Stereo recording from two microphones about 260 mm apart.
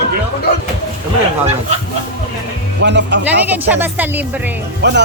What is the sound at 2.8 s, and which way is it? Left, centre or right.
Speech, right.